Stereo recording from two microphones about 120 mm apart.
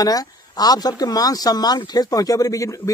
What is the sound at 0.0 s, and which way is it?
Speech, 30° left (ahead or behind).